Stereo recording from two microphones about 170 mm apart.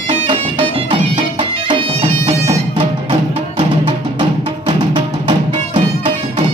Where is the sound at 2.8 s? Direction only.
30° right (ahead or behind).